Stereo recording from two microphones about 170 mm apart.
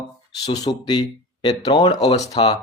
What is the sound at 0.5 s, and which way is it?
Speech, 25° left (ahead or behind).